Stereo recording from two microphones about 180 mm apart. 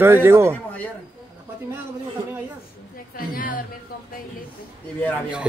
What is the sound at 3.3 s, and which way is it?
Speech, 50° left (ahead or behind).